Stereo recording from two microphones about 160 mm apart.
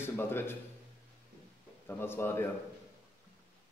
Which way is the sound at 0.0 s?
15° left (ahead or behind).